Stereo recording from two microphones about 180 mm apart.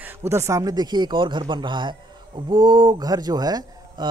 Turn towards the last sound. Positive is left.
turn(degrees=-20)  # may be behind; listen again after turning